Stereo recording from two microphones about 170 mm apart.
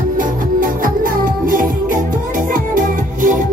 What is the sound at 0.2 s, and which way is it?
Music, 55° right (ahead or behind).